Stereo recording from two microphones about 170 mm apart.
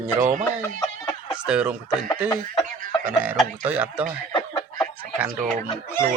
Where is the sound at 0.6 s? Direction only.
15° left (ahead or behind).